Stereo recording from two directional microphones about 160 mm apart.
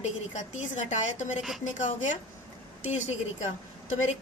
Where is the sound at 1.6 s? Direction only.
50° left (ahead or behind).